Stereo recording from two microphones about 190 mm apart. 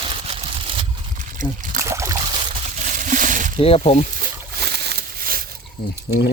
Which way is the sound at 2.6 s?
40° right (ahead or behind).